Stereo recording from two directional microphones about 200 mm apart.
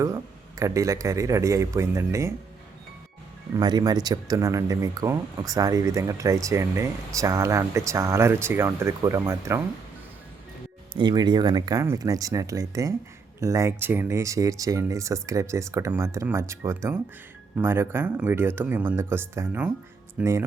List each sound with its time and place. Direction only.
0.0 s speech: 15° right (ahead or behind)
3.5 s speech: 20° right (ahead or behind)
10.9 s speech: 20° right (ahead or behind)